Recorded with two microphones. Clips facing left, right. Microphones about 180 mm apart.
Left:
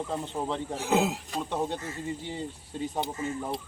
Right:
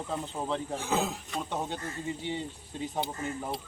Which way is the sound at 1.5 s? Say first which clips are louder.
Left 5 dB; centre (ahead or behind).